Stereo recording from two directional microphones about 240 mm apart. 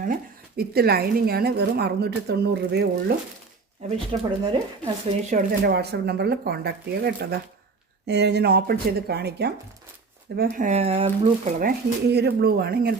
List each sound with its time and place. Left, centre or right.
0.0 s a woman's voice: right
3.8 s speech: right
5.3 s a woman's voice: right
12.0 s a woman's voice: right